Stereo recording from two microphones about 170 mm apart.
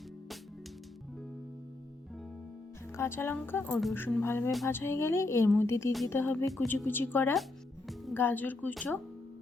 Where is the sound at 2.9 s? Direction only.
15° left (ahead or behind).